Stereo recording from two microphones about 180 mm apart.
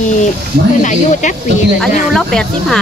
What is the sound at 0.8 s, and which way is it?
Speech, 45° left (ahead or behind).